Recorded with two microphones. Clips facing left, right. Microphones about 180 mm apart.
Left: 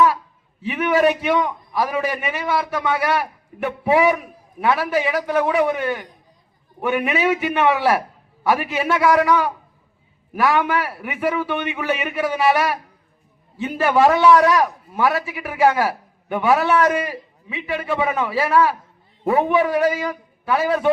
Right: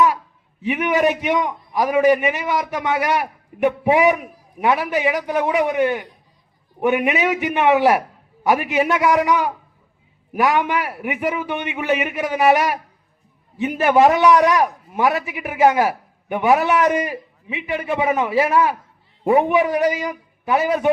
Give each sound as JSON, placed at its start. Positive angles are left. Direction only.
{"t": 0.6, "sound": "a man's voice", "side_deg": -15}